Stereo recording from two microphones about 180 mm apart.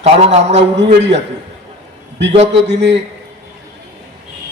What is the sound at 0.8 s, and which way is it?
Speech, 75° right (ahead or behind).